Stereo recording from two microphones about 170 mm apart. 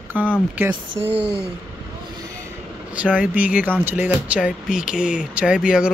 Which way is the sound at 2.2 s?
20° right (ahead or behind).